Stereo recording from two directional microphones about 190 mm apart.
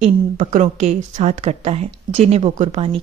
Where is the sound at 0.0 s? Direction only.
40° right (ahead or behind).